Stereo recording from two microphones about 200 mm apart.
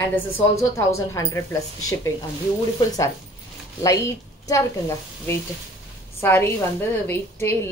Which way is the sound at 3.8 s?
15° left (ahead or behind).